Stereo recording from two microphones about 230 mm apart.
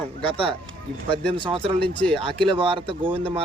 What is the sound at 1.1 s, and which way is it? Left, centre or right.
Speech, centre.